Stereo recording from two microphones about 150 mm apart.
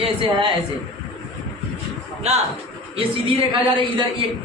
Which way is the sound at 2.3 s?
45° right (ahead or behind).